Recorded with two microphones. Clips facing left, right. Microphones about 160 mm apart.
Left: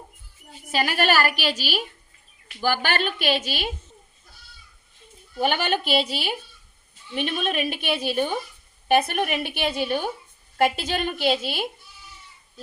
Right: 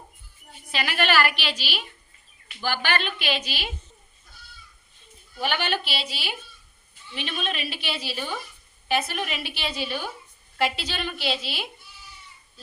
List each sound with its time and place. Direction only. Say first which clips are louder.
0.7 s a woman's voice: left 3 dB; 45° left (ahead or behind)
5.4 s a woman's voice: left 4 dB; 45° left (ahead or behind)